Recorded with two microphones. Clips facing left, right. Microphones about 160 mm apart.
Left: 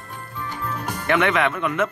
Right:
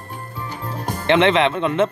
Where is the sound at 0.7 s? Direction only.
35° right (ahead or behind).